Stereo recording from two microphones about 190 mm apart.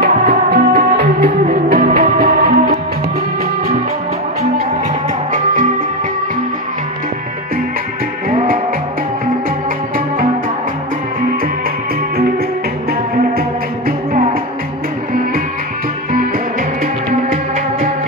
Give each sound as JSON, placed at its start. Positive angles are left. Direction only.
{"t": 0.1, "sound": "music", "side_deg": -55}
{"t": 8.3, "sound": "music", "side_deg": -35}
{"t": 16.8, "sound": "music", "side_deg": -45}